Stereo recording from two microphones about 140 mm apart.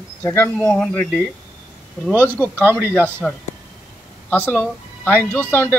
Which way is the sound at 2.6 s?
15° right (ahead or behind).